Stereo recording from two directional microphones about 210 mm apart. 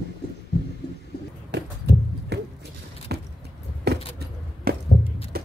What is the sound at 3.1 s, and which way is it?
Vehicle, 50° right (ahead or behind).